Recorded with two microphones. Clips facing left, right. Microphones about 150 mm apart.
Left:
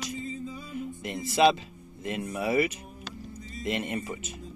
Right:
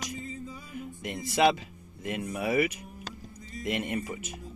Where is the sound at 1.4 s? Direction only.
15° right (ahead or behind).